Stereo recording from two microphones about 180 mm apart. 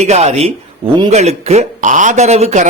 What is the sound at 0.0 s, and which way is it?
Speech, 40° right (ahead or behind).